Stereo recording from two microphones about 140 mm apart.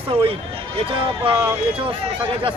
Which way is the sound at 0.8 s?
40° right (ahead or behind).